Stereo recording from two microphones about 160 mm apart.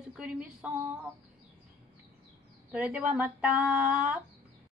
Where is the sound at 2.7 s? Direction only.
10° right (ahead or behind).